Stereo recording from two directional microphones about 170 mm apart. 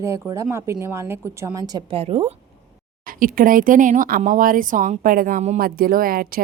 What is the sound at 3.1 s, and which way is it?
Speech, 55° right (ahead or behind).